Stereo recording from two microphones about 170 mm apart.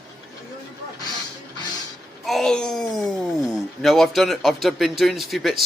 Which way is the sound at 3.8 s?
Centre (ahead or behind).